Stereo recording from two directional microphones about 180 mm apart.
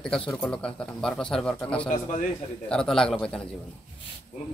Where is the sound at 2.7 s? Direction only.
5° left (ahead or behind).